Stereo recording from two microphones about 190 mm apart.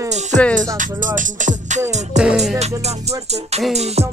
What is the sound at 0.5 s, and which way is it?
Music, 45° right (ahead or behind).